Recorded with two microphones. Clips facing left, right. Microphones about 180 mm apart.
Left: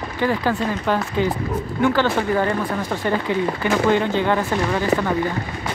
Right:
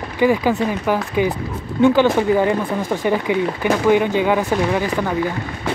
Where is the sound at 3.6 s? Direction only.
15° right (ahead or behind).